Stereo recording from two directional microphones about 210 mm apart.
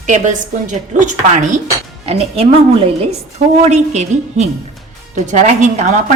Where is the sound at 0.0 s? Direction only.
35° right (ahead or behind).